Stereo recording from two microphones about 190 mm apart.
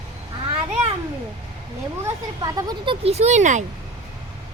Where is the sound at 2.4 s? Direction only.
20° right (ahead or behind).